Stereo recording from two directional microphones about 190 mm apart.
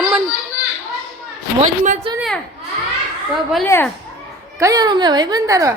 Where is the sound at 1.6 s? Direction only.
40° right (ahead or behind).